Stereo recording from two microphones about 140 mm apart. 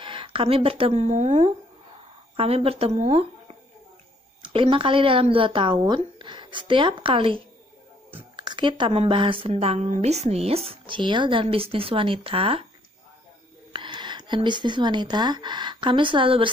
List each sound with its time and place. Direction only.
0.0 s a woman's voice: 35° right (ahead or behind)
4.4 s a woman's voice: 40° right (ahead or behind)
13.7 s speech: 35° right (ahead or behind)